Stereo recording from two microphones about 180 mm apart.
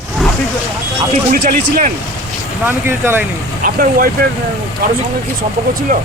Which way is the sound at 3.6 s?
50° right (ahead or behind).